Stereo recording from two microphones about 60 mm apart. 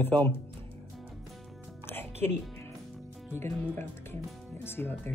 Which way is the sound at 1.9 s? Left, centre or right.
Left.